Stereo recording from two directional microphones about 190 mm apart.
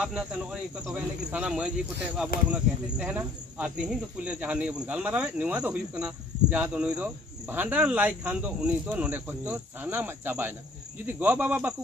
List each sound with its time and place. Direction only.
0.0 s speech: 5° right (ahead or behind)